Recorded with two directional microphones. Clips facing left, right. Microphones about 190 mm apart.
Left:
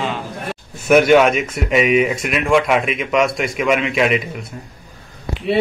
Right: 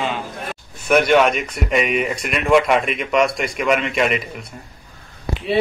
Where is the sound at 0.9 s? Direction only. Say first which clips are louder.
Left 3 dB; 5° left (ahead or behind).